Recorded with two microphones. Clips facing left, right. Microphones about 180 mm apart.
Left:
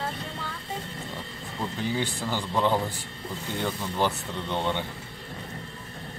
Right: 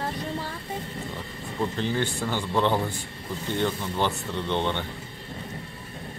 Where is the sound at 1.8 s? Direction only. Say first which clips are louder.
Left 1 dB; 10° left (ahead or behind).